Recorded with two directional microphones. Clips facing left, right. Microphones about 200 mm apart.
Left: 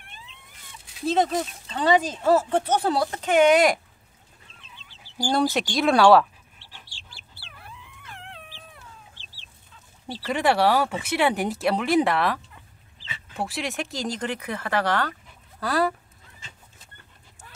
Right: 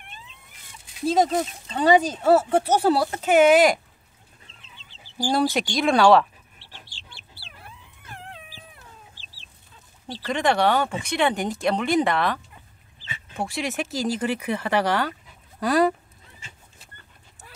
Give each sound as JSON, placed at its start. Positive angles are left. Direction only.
{"t": 1.0, "sound": "speech", "side_deg": -10}
{"t": 5.1, "sound": "speech", "side_deg": -5}
{"t": 10.0, "sound": "speech", "side_deg": 5}
{"t": 13.4, "sound": "speech", "side_deg": 0}